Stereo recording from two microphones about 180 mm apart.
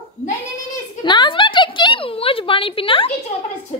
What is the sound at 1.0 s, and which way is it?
A woman's voice, 25° left (ahead or behind).